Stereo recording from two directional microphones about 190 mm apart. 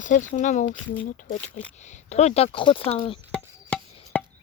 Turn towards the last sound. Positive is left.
turn(degrees=10)  # may be behind; listen again after turning